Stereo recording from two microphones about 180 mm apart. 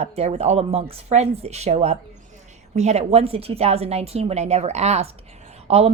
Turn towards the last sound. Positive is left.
turn(degrees=-35)  # may be behind; listen again after turning